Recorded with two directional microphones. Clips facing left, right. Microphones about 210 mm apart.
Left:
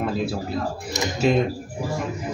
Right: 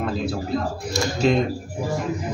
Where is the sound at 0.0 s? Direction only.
5° left (ahead or behind).